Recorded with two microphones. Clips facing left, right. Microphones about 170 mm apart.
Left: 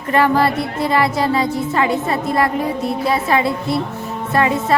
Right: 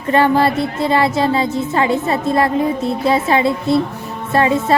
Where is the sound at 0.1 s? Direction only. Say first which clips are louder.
Right 2 dB; 25° right (ahead or behind).